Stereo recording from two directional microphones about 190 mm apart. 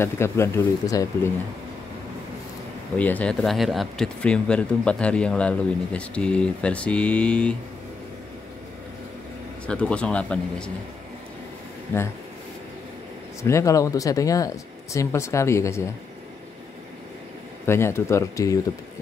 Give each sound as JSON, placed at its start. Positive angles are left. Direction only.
{"t": 0.0, "sound": "speech", "side_deg": 15}
{"t": 3.0, "sound": "speech", "side_deg": 10}
{"t": 9.7, "sound": "speech", "side_deg": 5}
{"t": 13.4, "sound": "speech", "side_deg": 15}
{"t": 17.6, "sound": "speech", "side_deg": 15}